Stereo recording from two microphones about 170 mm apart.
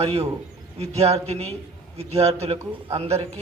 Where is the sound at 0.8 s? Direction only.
35° right (ahead or behind).